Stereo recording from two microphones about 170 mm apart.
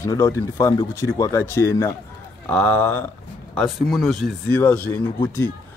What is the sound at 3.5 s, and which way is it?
Speech, centre (ahead or behind).